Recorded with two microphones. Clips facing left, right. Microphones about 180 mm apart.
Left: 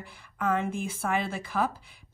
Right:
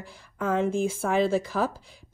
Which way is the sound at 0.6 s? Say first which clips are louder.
Right 7 dB; 55° right (ahead or behind).